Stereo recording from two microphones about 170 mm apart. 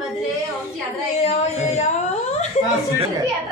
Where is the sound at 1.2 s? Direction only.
40° left (ahead or behind).